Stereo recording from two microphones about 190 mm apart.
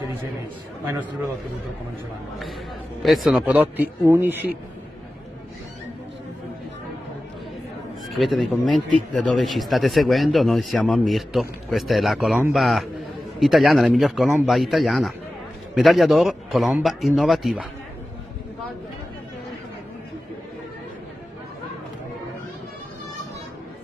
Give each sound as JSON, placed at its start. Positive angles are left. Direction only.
{"t": 3.0, "sound": "a man's voice", "side_deg": 0}
{"t": 8.1, "sound": "speech", "side_deg": 0}